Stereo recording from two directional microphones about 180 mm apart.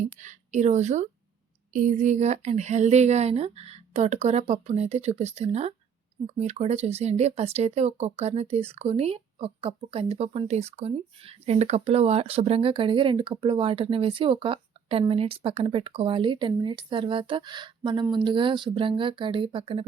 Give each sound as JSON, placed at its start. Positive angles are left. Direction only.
{"t": 0.0, "sound": "a woman's voice", "side_deg": -40}